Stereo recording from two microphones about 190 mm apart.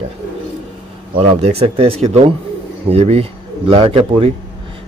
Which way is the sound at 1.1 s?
30° right (ahead or behind).